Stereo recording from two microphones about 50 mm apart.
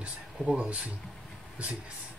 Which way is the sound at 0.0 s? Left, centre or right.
Right.